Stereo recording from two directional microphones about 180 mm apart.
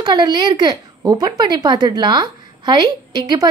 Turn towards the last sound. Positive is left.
turn(degrees=-25)  # may be behind; listen again after turning